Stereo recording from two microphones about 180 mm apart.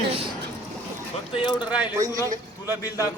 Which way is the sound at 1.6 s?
5° right (ahead or behind).